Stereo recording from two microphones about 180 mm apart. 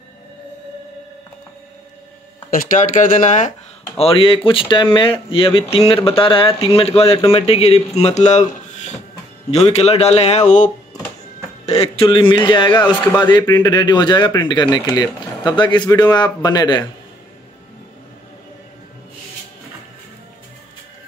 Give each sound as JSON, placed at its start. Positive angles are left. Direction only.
{"t": 2.5, "sound": "speech", "side_deg": 45}
{"t": 4.0, "sound": "speech", "side_deg": 30}